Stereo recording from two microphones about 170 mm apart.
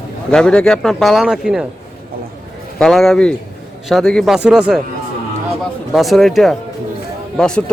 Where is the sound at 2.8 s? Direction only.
Centre (ahead or behind).